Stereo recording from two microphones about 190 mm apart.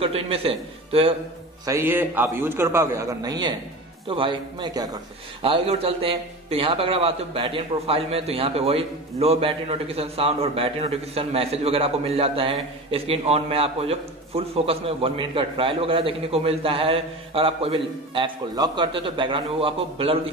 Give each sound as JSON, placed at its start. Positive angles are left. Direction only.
{"t": 0.0, "sound": "a man's voice", "side_deg": -30}
{"t": 1.7, "sound": "a man's voice", "side_deg": -10}